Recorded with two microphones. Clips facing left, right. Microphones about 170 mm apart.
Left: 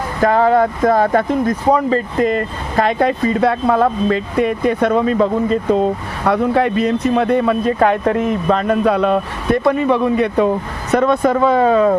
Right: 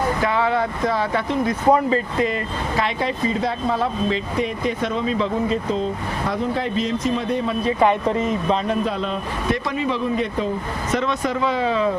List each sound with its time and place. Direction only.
0.2 s speech: 45° left (ahead or behind); by 10.5 s 65° left (ahead or behind)
10.9 s speech: 55° left (ahead or behind)